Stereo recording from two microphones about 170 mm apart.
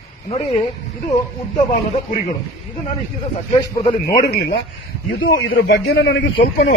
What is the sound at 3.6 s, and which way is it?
Speech, 20° left (ahead or behind).